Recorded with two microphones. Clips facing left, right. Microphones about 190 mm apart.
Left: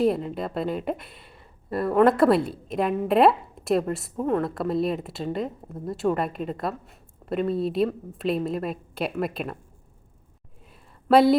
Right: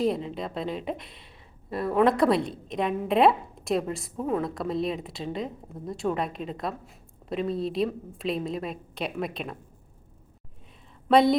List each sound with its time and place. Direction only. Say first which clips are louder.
0.0 s a woman's voice: left 3 dB; centre (ahead or behind)
11.1 s a woman's voice: left 3 dB; 5° left (ahead or behind)